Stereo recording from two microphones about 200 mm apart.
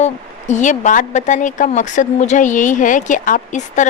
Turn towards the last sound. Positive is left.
turn(degrees=40)  # may be behind; listen again after turning